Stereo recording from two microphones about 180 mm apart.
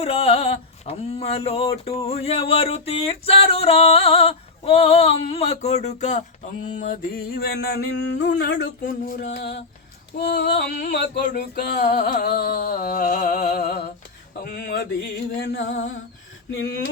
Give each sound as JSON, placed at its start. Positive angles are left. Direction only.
{"t": 0.0, "sound": "music", "side_deg": 35}
{"t": 10.2, "sound": "female singing", "side_deg": 70}
{"t": 11.5, "sound": "music", "side_deg": 60}
{"t": 15.4, "sound": "music", "side_deg": 90}
{"t": 16.6, "sound": "female singing", "side_deg": 70}